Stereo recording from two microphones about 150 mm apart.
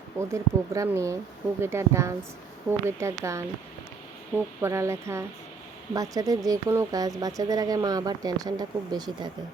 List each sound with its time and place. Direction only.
0.2 s a woman's voice: 20° right (ahead or behind)
4.6 s speech: 20° right (ahead or behind)